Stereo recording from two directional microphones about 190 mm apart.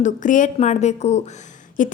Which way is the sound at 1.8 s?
45° left (ahead or behind).